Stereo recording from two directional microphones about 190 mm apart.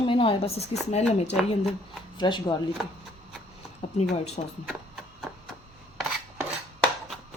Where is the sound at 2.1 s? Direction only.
25° left (ahead or behind).